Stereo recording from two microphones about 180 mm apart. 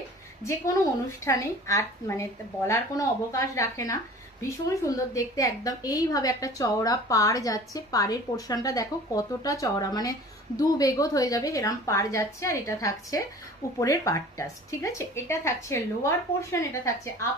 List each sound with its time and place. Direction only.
1.2 s a woman's voice: 15° left (ahead or behind)